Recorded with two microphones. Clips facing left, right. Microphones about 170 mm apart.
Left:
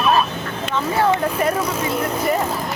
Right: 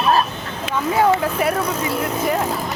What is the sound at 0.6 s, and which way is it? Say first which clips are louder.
Speech: right 2 dB; 10° right (ahead or behind).